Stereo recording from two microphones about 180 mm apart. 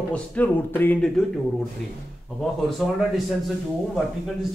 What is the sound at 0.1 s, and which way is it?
Speech, 5° left (ahead or behind).